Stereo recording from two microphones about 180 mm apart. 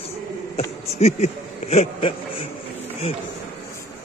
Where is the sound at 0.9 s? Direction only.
35° left (ahead or behind).